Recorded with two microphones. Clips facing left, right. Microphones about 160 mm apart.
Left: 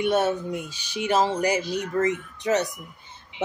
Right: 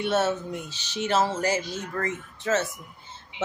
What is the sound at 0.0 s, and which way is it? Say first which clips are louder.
Speech: left 2 dB; 15° left (ahead or behind).